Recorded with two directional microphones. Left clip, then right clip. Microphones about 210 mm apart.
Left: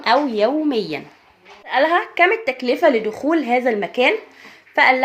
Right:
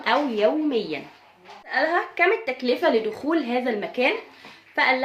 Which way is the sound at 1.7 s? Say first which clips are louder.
Left 6 dB; 30° left (ahead or behind).